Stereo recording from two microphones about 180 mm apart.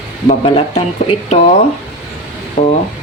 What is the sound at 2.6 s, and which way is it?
Speech, 40° left (ahead or behind).